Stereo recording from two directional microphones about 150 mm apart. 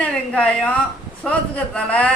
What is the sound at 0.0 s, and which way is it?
A woman's voice, 10° left (ahead or behind).